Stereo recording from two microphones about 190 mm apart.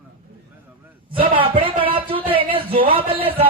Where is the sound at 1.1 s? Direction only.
30° right (ahead or behind).